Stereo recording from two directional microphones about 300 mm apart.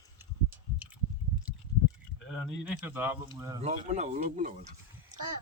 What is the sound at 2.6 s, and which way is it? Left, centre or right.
A child's voice, centre.